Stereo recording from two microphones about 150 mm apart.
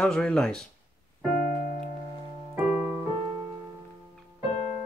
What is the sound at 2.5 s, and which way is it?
Music, 20° right (ahead or behind).